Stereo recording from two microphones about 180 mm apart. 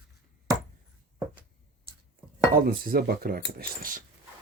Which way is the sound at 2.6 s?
55° right (ahead or behind).